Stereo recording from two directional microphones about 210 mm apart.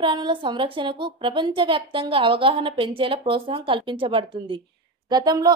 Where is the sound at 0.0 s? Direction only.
20° right (ahead or behind).